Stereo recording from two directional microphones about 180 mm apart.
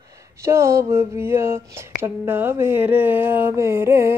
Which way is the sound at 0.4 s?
15° right (ahead or behind).